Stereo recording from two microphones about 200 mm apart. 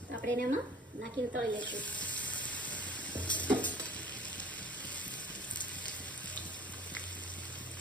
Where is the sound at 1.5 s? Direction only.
5° left (ahead or behind).